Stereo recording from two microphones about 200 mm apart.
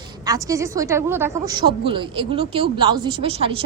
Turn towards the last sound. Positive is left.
turn(degrees=-30)  # may be behind; listen again after turning